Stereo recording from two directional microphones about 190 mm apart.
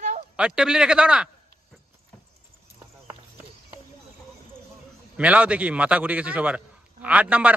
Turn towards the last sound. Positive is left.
turn(degrees=-5)  # may be behind; listen again after turning